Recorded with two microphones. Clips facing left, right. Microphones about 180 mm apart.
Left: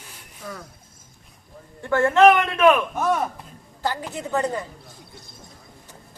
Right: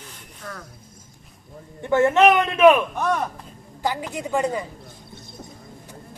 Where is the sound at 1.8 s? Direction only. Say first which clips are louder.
Even; 20° right (ahead or behind).